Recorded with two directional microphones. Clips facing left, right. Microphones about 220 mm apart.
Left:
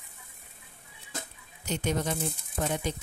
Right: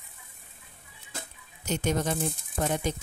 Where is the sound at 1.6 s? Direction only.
45° right (ahead or behind).